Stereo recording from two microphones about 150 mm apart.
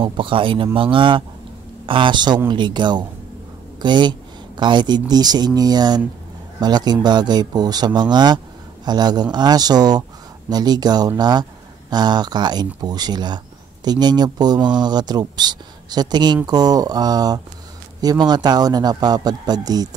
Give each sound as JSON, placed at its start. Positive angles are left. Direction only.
{"t": 0.0, "sound": "speech", "side_deg": -35}